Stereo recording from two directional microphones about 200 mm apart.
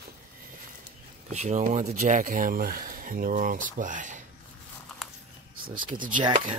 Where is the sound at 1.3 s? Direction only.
35° right (ahead or behind).